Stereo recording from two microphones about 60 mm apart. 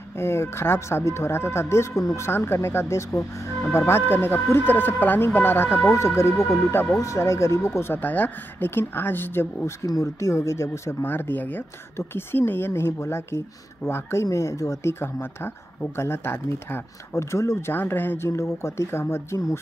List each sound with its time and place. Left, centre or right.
0.2 s speech: left
5.9 s speech: left
6.7 s speech: left
7.0 s speech: left
7.9 s speech: left
9.8 s speech: left
10.3 s speech: left
11.1 s speech: left
14.2 s speech: left
17.6 s speech: left
18.4 s speech: left